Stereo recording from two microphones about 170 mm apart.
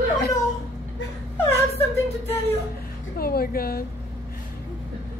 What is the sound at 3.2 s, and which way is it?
Speech, 65° left (ahead or behind).